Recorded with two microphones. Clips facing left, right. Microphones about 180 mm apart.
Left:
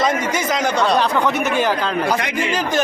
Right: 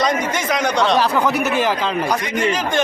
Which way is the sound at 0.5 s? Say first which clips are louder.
Right 1 dB; centre (ahead or behind).